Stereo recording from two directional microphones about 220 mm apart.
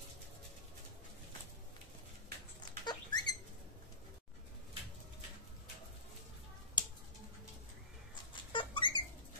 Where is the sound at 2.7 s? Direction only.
20° left (ahead or behind).